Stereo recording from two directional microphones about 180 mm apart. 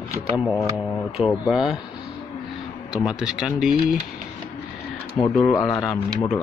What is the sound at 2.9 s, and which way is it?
Speech, 5° right (ahead or behind).